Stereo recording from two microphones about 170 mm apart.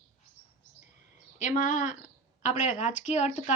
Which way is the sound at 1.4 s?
45° left (ahead or behind).